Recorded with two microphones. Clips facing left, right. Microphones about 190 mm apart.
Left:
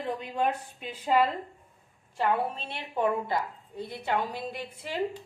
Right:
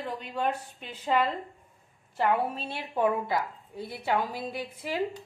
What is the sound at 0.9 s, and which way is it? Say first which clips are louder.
Speech: left 2 dB; 10° left (ahead or behind).